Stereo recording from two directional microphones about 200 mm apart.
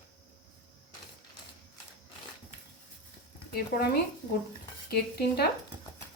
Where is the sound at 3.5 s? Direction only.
50° left (ahead or behind).